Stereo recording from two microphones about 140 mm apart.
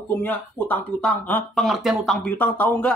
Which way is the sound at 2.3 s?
10° left (ahead or behind).